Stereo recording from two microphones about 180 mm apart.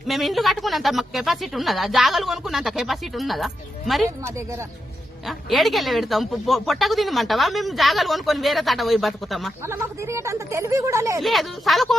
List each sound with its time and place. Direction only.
0.1 s a woman's voice: centre (ahead or behind)
4.2 s speech: 15° right (ahead or behind)
5.2 s a woman's voice: centre (ahead or behind)
9.6 s speech: 15° right (ahead or behind)
11.2 s a woman's voice: centre (ahead or behind)